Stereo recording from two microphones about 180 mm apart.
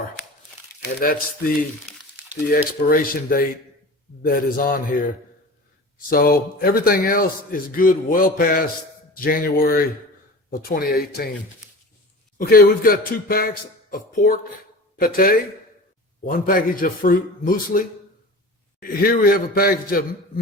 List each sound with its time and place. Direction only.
0.9 s a man's voice: 55° left (ahead or behind)
2.8 s a man's voice: 50° left (ahead or behind)
12.4 s a man's voice: 55° left (ahead or behind)